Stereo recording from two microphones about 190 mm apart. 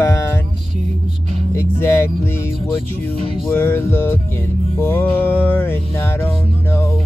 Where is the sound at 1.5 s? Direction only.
15° left (ahead or behind).